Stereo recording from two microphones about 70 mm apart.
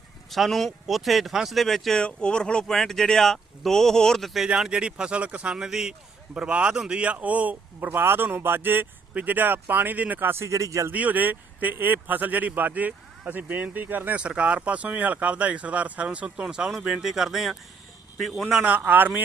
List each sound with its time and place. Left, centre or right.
0.3 s speech: centre
4.4 s a man's voice: centre; by 10.4 s right
10.4 s speech: right
10.9 s speech: right; by 18.6 s centre
18.6 s speech: right